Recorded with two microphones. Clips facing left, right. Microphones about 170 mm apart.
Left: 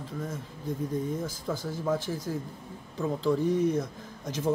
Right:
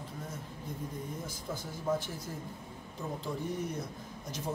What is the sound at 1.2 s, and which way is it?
Speech, 90° left.